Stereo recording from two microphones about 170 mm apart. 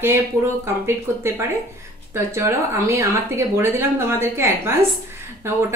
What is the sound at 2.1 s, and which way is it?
A woman's voice, 15° right (ahead or behind).